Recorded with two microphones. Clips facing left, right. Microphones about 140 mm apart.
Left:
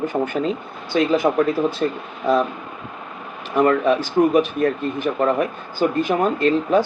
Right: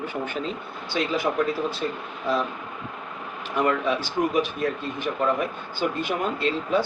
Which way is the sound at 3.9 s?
50° left (ahead or behind).